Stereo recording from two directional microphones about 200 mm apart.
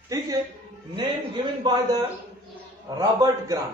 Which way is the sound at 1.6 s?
20° right (ahead or behind).